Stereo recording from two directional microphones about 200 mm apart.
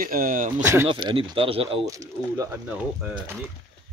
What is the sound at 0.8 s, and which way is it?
Speech, 25° right (ahead or behind).